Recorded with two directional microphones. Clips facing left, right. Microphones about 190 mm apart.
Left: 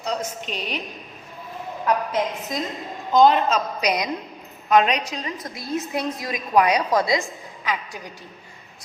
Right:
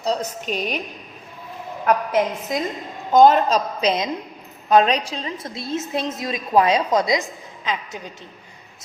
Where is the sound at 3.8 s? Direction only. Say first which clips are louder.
Right 2 dB; 25° right (ahead or behind).